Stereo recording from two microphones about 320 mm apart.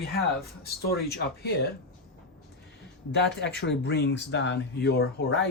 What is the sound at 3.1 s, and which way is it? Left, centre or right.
Speech, left.